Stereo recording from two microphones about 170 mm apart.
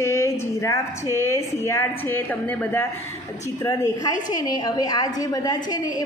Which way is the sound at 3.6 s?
20° left (ahead or behind).